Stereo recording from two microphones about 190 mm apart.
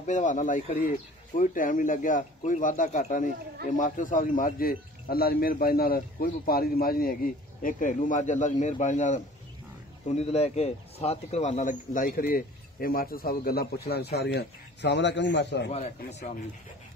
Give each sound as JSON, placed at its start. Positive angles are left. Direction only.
{"t": 0.0, "sound": "speech", "side_deg": 40}
{"t": 15.7, "sound": "speech", "side_deg": 35}